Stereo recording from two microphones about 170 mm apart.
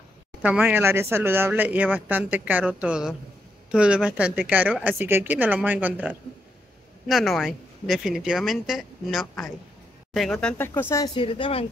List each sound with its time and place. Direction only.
0.4 s a woman's voice: 10° right (ahead or behind)
10.6 s speech: 15° left (ahead or behind)
11.1 s a woman's voice: 30° left (ahead or behind)